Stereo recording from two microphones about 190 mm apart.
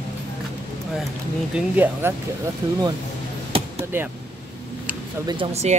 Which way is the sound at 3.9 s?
10° right (ahead or behind).